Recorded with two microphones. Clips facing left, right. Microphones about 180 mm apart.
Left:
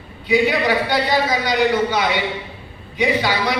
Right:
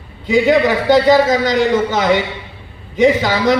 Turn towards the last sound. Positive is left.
turn(degrees=-45)  # may be behind; listen again after turning